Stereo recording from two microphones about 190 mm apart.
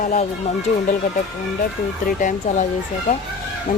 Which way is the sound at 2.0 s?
40° left (ahead or behind).